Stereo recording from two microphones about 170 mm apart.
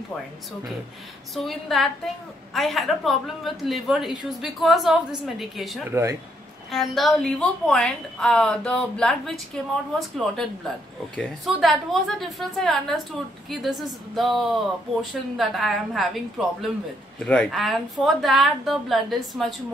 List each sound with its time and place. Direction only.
1.3 s a woman's voice: centre (ahead or behind)
5.9 s speech: 15° right (ahead or behind)
6.7 s a woman's voice: centre (ahead or behind)